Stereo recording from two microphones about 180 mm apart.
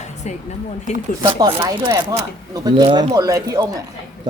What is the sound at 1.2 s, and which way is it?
Speech, 30° right (ahead or behind).